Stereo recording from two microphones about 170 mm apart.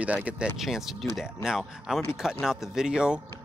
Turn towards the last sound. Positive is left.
turn(degrees=-5)  # may be behind; listen again after turning